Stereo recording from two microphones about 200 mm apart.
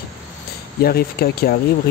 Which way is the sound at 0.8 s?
50° left (ahead or behind).